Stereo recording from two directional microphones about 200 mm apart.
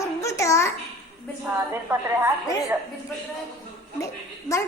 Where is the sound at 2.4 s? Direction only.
15° left (ahead or behind).